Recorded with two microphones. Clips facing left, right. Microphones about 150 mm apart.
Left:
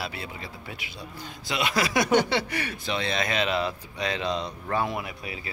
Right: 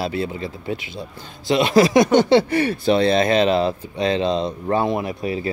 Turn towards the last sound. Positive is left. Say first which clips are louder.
# right 13 dB
turn(degrees=-35)  # may be behind; listen again after turning